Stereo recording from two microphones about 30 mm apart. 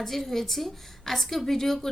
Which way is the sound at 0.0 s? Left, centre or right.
Centre.